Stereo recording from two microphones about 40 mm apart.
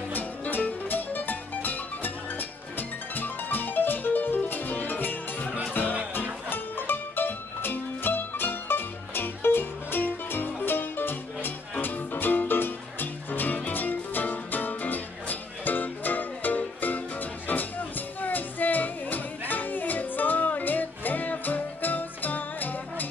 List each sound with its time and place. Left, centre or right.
0.1 s music: left
6.5 s music: left